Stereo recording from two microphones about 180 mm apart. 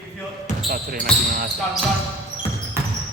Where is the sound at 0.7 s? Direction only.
50° right (ahead or behind).